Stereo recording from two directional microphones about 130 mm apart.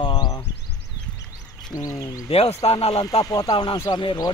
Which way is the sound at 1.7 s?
25° left (ahead or behind).